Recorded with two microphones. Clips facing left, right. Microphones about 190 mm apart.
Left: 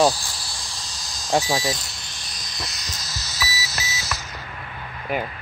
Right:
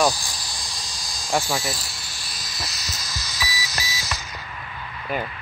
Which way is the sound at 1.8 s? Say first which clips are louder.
Right 1 dB; 5° right (ahead or behind).